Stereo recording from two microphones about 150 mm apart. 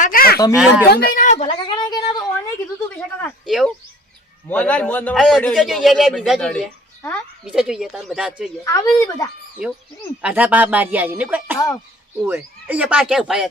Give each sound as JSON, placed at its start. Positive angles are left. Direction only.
{"t": 0.0, "sound": "a sound", "side_deg": 75}
{"t": 0.5, "sound": "a man's voice", "side_deg": -5}
{"t": 0.9, "sound": "a woman's voice", "side_deg": 60}
{"t": 1.5, "sound": "speech", "side_deg": 30}
{"t": 3.4, "sound": "a man's voice", "side_deg": 0}
{"t": 7.5, "sound": "a man's voice", "side_deg": -5}
{"t": 8.6, "sound": "speech", "side_deg": 25}
{"t": 10.2, "sound": "speech", "side_deg": -10}
{"t": 11.5, "sound": "speech", "side_deg": 20}
{"t": 12.3, "sound": "speech", "side_deg": -10}